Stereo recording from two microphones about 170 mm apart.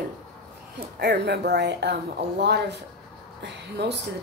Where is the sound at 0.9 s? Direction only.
75° right (ahead or behind).